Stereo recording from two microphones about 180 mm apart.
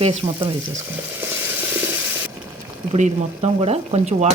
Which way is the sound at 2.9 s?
35° right (ahead or behind).